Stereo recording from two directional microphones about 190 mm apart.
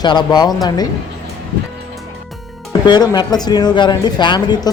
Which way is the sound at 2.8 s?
20° left (ahead or behind).